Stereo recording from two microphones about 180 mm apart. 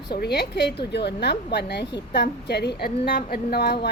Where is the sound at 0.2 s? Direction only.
65° left (ahead or behind).